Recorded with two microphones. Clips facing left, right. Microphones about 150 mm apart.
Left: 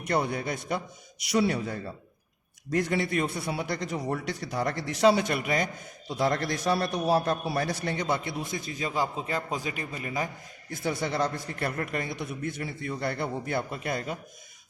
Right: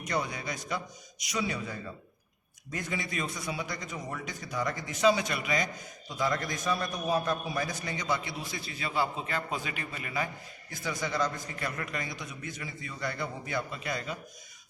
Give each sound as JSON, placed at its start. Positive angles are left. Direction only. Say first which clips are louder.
{"t": 0.0, "sound": "a man's voice", "louder": "left 5 dB", "side_deg": 60}
{"t": 1.6, "sound": "speech", "louder": "left 5 dB", "side_deg": 50}
{"t": 2.7, "sound": "a man's voice", "louder": "left 8 dB", "side_deg": 70}
{"t": 10.7, "sound": "a man's voice", "louder": "left 4 dB", "side_deg": 60}